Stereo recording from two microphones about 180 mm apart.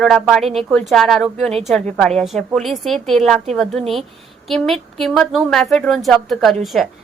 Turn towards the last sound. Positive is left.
turn(degrees=0)  # may be behind; listen again after turning